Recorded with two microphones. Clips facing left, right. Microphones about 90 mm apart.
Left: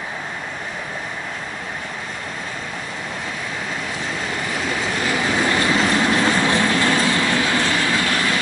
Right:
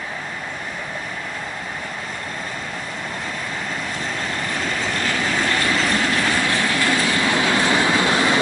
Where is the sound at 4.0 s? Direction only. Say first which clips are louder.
Even; 5° left (ahead or behind); by 6.6 s 20° left (ahead or behind).